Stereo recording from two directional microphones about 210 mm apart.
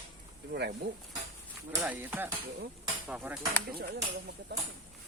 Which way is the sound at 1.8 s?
10° right (ahead or behind).